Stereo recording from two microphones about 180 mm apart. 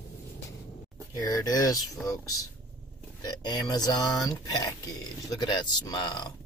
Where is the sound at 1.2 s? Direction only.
20° left (ahead or behind).